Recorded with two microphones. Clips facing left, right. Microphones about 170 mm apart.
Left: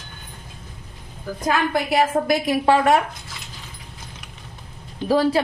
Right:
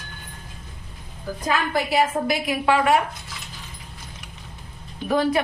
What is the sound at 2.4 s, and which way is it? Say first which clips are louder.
Speech: left 2 dB; 40° left (ahead or behind).